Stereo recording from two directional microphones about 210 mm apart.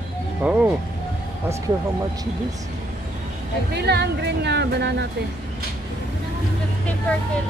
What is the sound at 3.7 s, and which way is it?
Speech, 50° right (ahead or behind).